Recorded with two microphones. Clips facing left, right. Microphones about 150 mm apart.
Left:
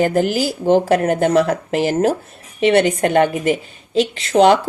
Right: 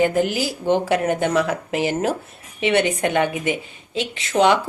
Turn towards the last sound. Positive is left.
turn(degrees=35)  # may be behind; listen again after turning